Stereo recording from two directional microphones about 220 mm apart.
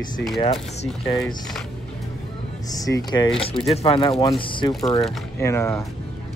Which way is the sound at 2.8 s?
15° left (ahead or behind).